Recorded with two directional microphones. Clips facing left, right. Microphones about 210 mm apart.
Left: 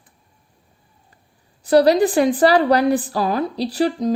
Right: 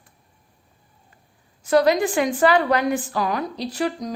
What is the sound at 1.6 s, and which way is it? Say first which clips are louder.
Speech: left 4 dB; 35° left (ahead or behind).